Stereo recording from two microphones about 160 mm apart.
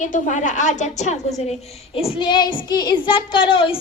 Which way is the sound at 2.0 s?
30° left (ahead or behind).